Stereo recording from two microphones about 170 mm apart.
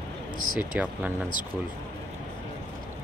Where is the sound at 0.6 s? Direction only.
10° right (ahead or behind).